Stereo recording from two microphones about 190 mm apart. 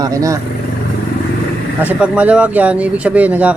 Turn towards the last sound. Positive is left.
turn(degrees=-5)  # may be behind; listen again after turning